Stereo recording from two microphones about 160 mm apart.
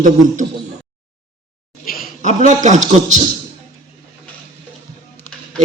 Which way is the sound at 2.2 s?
50° right (ahead or behind).